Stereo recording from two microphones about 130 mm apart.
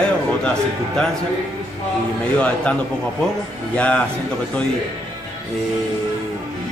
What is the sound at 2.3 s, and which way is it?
Speech, 10° left (ahead or behind).